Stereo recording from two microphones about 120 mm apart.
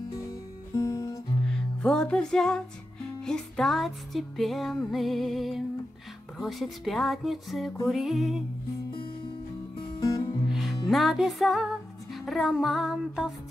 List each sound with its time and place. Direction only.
0.7 s music: 30° left (ahead or behind)
1.5 s music: 5° left (ahead or behind)
6.3 s speech: centre (ahead or behind)
9.8 s music: 30° left (ahead or behind)
10.5 s music: centre (ahead or behind)